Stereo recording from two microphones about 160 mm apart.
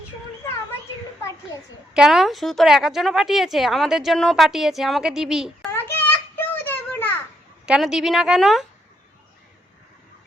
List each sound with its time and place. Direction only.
1.9 s a woman's voice: 5° right (ahead or behind)
5.7 s child singing: 15° left (ahead or behind)
7.6 s a woman's voice: 5° right (ahead or behind)